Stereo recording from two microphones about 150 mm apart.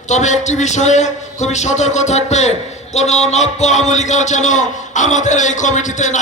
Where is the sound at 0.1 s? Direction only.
50° left (ahead or behind).